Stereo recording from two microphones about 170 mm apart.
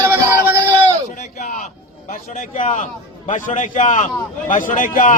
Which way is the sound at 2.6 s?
50° left (ahead or behind).